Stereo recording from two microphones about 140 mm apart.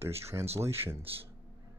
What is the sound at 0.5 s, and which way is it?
Speech, 20° right (ahead or behind).